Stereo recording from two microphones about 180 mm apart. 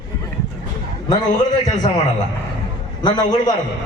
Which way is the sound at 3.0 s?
25° left (ahead or behind).